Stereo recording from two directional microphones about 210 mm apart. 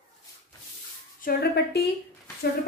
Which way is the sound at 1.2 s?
45° left (ahead or behind).